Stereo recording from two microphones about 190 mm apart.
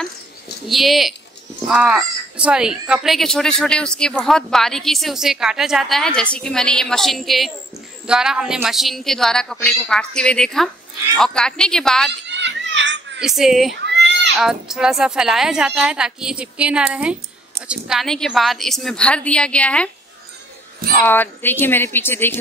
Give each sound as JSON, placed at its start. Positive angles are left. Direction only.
{"t": 0.7, "sound": "a woman's voice", "side_deg": 0}
{"t": 12.3, "sound": "children playing", "side_deg": -70}
{"t": 13.2, "sound": "a woman's voice", "side_deg": 0}
{"t": 13.8, "sound": "a sound", "side_deg": -65}
{"t": 14.3, "sound": "a woman's voice", "side_deg": 0}
{"t": 21.0, "sound": "speech", "side_deg": 10}